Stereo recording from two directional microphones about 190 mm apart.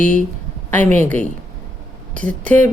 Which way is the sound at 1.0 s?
10° left (ahead or behind).